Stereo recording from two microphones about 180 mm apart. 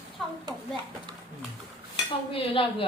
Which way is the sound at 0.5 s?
25° right (ahead or behind).